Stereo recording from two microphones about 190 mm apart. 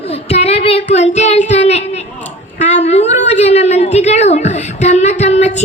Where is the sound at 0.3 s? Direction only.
35° left (ahead or behind).